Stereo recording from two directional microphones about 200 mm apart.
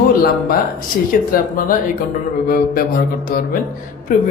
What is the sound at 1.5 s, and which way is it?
Speech, 45° left (ahead or behind).